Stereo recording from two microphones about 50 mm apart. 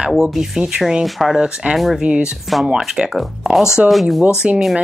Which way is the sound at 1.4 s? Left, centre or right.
Centre.